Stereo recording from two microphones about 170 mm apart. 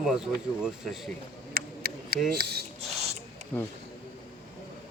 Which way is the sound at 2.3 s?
70° right (ahead or behind).